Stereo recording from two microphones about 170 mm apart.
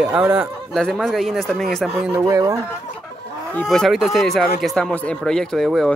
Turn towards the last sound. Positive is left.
turn(degrees=0)  # may be behind; listen again after turning